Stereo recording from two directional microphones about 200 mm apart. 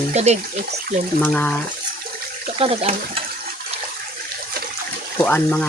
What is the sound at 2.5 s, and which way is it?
Speech, 30° right (ahead or behind).